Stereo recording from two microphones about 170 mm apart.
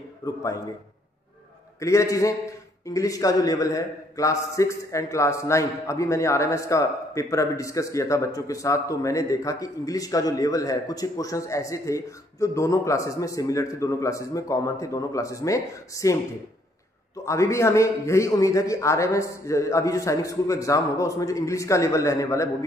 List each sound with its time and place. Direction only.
0.2 s a man's voice: 20° left (ahead or behind)
1.8 s a man's voice: 15° left (ahead or behind)
17.2 s a man's voice: 15° left (ahead or behind)